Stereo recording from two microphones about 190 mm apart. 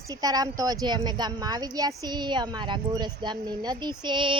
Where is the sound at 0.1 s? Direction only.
20° right (ahead or behind).